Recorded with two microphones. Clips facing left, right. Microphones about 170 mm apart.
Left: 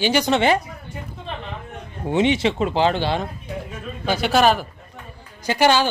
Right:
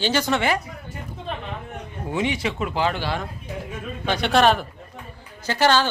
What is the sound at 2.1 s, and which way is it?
Speech, 25° left (ahead or behind).